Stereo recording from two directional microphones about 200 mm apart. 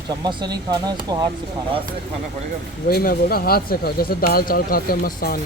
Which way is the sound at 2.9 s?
50° left (ahead or behind).